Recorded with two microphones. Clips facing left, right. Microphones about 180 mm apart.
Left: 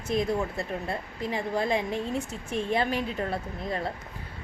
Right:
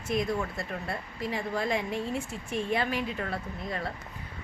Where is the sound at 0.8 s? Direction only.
20° left (ahead or behind).